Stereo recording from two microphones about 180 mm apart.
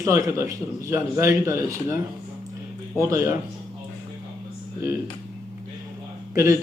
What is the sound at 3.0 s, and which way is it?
Speech, 15° right (ahead or behind).